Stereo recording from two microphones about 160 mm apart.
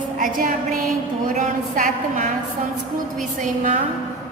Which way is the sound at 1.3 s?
55° right (ahead or behind).